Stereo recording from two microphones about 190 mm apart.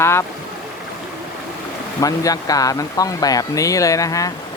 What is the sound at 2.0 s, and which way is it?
Speech, 20° left (ahead or behind).